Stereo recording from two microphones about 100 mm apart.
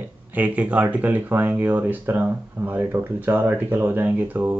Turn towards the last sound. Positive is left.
turn(degrees=-15)  # may be behind; listen again after turning